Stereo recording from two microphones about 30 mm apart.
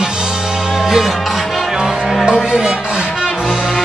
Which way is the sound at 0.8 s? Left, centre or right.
Centre.